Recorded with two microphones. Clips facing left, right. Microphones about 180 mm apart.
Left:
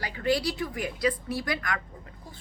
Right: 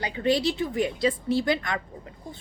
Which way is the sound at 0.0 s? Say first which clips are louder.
Right 3 dB; 20° right (ahead or behind).